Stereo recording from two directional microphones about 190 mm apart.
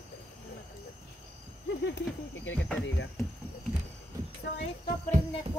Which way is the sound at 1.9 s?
65° left (ahead or behind).